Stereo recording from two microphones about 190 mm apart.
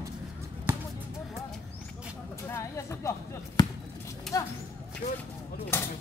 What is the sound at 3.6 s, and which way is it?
Basketball bounce, 20° left (ahead or behind).